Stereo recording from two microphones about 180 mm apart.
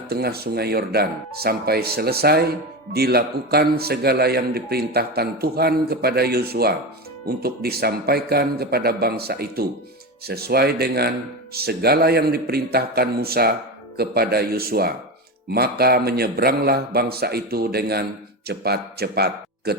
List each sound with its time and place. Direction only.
0.1 s a man's voice: 60° right (ahead or behind)